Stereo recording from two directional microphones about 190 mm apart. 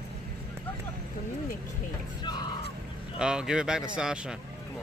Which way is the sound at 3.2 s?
5° right (ahead or behind).